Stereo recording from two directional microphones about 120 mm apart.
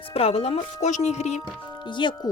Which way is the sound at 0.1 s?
60° left (ahead or behind).